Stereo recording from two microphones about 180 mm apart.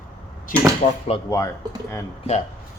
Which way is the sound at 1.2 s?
20° left (ahead or behind).